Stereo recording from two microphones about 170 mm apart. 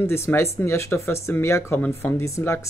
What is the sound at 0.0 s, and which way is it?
Speech, 15° left (ahead or behind).